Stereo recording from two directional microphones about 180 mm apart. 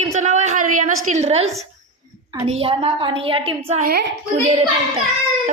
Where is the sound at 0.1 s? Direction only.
40° right (ahead or behind).